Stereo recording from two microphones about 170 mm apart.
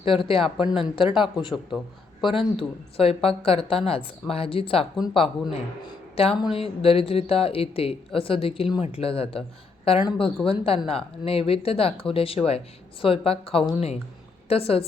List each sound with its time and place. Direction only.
0.0 s speech: 30° left (ahead or behind)
0.5 s speech: 5° right (ahead or behind)
0.8 s speech: 30° left (ahead or behind)
8.6 s speech: 5° right (ahead or behind)
8.9 s speech: 35° left (ahead or behind)
10.4 s speech: 35° left (ahead or behind)